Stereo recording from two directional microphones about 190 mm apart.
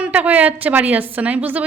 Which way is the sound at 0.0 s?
10° right (ahead or behind).